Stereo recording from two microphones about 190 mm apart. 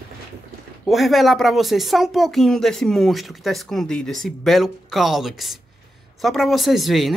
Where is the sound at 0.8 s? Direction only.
Centre (ahead or behind).